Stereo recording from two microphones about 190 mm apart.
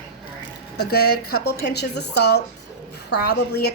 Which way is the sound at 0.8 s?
55° left (ahead or behind).